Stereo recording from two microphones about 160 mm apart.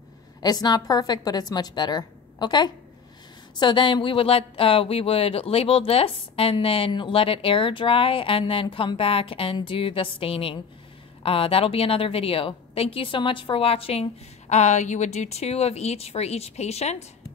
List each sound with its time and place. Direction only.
0.4 s a woman's voice: 25° left (ahead or behind); by 17.0 s 45° left (ahead or behind)